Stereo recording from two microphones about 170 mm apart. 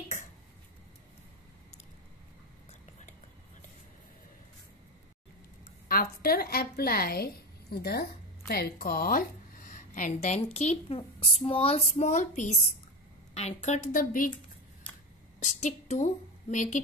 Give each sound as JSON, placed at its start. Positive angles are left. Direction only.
{"t": 5.9, "sound": "a woman's voice", "side_deg": 60}
{"t": 9.7, "sound": "a woman's voice", "side_deg": 45}
{"t": 15.4, "sound": "a woman's voice", "side_deg": 45}